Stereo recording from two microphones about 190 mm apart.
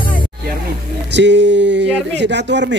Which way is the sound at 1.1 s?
70° right (ahead or behind).